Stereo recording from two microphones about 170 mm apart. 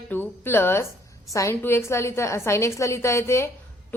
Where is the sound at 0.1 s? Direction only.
10° left (ahead or behind).